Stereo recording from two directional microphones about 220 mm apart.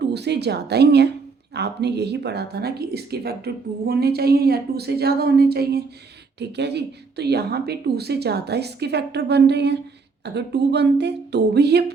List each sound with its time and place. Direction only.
0.0 s speech: 50° right (ahead or behind)